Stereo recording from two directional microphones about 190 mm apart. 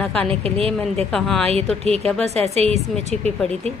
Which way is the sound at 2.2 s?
35° right (ahead or behind).